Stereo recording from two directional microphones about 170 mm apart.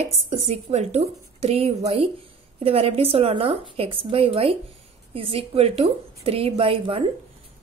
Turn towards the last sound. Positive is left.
turn(degrees=-30)  # may be behind; listen again after turning